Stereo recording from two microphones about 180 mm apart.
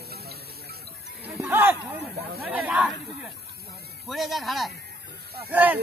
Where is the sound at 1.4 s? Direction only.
15° right (ahead or behind).